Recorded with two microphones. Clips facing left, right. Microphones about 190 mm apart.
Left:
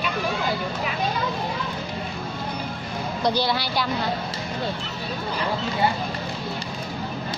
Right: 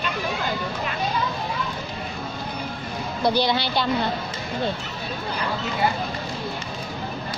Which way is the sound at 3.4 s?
25° right (ahead or behind).